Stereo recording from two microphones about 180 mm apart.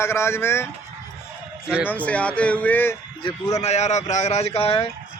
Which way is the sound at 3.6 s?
40° left (ahead or behind).